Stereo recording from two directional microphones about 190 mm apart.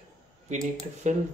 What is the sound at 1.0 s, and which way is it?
Speech, 40° right (ahead or behind).